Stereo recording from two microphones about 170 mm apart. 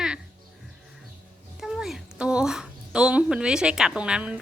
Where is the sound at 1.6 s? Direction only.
Centre (ahead or behind).